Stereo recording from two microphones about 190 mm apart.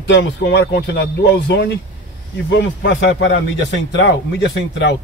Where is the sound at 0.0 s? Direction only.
70° left (ahead or behind).